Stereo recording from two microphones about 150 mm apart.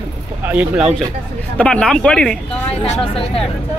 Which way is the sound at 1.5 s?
10° left (ahead or behind).